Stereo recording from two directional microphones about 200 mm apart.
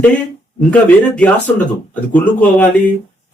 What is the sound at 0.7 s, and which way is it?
Speech, 5° left (ahead or behind).